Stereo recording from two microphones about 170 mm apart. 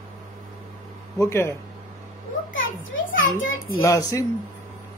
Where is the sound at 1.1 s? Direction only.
15° left (ahead or behind).